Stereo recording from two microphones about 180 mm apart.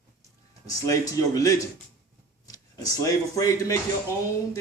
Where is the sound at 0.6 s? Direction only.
20° left (ahead or behind).